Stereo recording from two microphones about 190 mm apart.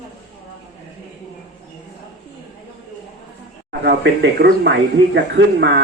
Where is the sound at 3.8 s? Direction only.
65° right (ahead or behind).